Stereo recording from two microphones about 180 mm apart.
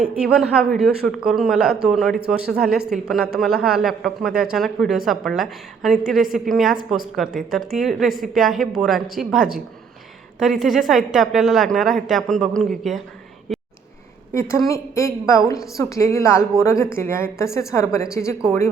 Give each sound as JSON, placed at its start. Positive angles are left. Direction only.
{"t": 0.2, "sound": "a woman's voice", "side_deg": 0}
{"t": 10.4, "sound": "a woman's voice", "side_deg": 0}
{"t": 13.5, "sound": "a sound", "side_deg": 0}
{"t": 14.7, "sound": "a woman's voice", "side_deg": 15}